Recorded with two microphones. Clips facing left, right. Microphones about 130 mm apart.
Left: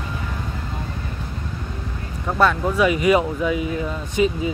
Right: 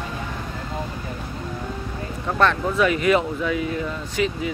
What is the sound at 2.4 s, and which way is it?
Speech, 10° left (ahead or behind).